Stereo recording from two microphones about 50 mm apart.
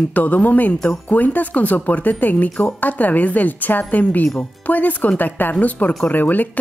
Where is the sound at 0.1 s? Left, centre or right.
Left.